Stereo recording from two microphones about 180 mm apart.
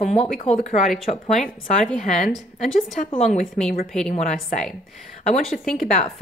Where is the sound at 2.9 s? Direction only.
40° left (ahead or behind).